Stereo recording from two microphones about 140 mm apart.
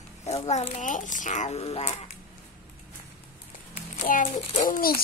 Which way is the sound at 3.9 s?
65° left (ahead or behind).